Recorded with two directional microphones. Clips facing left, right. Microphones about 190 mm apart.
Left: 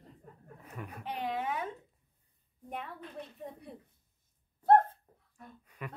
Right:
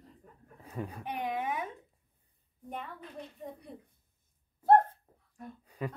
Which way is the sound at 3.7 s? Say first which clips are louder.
Right 1 dB; 5° left (ahead or behind).